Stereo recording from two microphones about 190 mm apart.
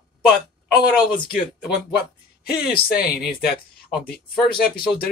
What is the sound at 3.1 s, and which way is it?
Speech, centre (ahead or behind).